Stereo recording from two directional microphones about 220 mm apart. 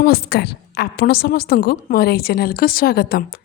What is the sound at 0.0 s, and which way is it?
A woman's voice, 45° left (ahead or behind).